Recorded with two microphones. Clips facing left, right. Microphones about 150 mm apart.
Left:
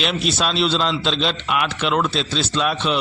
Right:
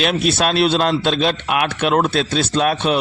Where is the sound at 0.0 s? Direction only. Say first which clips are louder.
Right 4 dB; 55° right (ahead or behind).